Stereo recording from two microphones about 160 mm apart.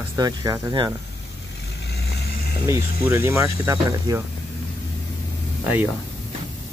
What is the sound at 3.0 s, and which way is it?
Speech, 15° right (ahead or behind).